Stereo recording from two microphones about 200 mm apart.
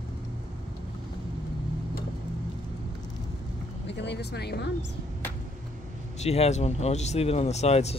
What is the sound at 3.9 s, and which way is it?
Speech, 60° left (ahead or behind).